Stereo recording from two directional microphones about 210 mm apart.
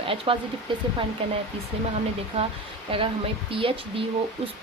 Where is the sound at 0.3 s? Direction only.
25° right (ahead or behind).